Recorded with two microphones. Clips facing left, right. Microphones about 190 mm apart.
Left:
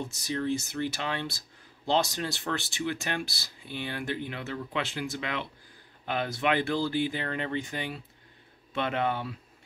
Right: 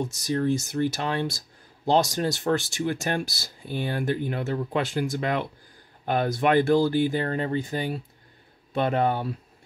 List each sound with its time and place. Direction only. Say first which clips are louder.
0.2 s speech: right 5 dB; 45° right (ahead or behind)